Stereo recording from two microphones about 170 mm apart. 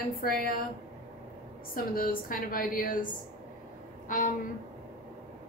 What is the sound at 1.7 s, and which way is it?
A woman's voice, 55° left (ahead or behind).